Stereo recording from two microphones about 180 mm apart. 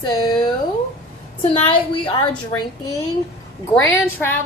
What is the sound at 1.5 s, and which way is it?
Speech, 25° left (ahead or behind).